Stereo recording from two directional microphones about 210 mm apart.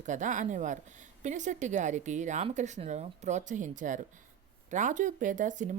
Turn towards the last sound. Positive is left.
turn(degrees=-35)  # may be behind; listen again after turning